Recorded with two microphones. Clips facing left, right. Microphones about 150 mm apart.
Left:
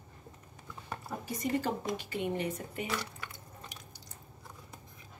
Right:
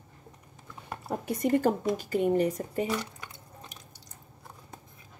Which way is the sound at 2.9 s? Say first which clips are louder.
Right 4 dB; 15° right (ahead or behind).